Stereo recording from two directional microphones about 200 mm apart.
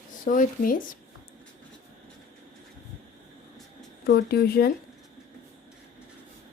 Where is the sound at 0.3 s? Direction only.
45° left (ahead or behind).